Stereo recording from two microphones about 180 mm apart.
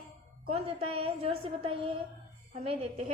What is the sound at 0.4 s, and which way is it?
A woman's voice, 30° right (ahead or behind).